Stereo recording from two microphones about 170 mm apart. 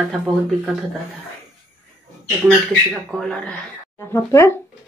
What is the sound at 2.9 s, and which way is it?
Speech, centre (ahead or behind).